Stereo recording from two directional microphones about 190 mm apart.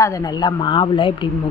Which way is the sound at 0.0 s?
20° left (ahead or behind).